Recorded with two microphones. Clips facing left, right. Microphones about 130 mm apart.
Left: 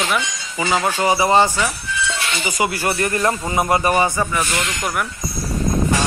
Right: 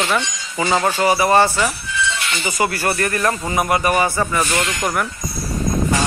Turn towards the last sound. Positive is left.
turn(degrees=-15)  # may be behind; listen again after turning